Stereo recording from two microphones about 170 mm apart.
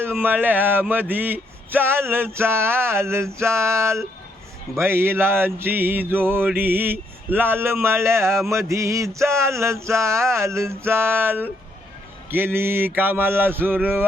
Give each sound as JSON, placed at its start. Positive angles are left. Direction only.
{"t": 0.0, "sound": "speech", "side_deg": -10}